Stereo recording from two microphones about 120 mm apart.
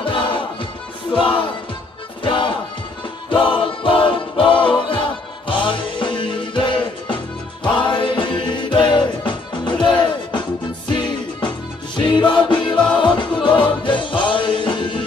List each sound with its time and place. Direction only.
0.0 s music: 45° left (ahead or behind)
12.7 s music: 10° left (ahead or behind)
13.0 s music: 45° left (ahead or behind)